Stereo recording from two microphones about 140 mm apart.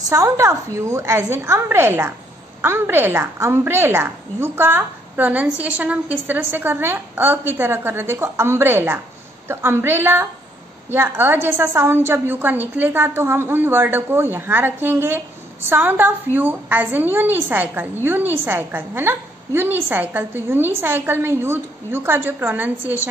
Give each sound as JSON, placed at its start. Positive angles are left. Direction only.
{"t": 0.0, "sound": "a woman's voice", "side_deg": -20}